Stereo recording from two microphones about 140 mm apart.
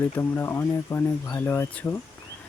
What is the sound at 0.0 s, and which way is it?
Speech, 15° left (ahead or behind).